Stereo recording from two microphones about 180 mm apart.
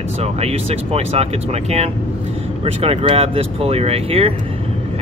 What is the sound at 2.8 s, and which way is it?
Speech, 30° right (ahead or behind).